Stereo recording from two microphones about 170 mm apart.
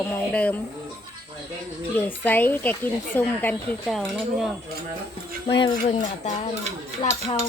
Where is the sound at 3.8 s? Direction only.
Centre (ahead or behind).